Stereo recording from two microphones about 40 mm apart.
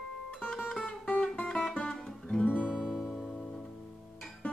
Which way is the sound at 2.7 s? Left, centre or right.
Centre.